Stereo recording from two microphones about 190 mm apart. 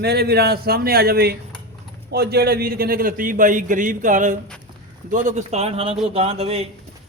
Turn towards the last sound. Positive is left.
turn(degrees=-35)  # may be behind; listen again after turning